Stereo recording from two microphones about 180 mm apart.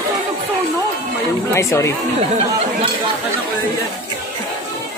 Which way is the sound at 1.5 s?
15° left (ahead or behind).